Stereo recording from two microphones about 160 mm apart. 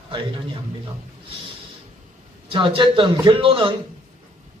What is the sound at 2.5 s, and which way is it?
A man's voice, 30° right (ahead or behind).